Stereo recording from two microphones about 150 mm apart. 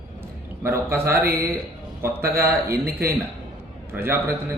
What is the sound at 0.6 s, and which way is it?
A man's voice, 15° right (ahead or behind).